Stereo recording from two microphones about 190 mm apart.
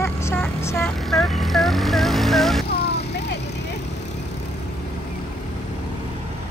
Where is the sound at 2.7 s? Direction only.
60° left (ahead or behind).